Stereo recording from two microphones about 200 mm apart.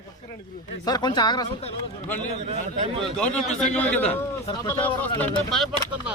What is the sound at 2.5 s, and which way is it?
Speech, 35° right (ahead or behind).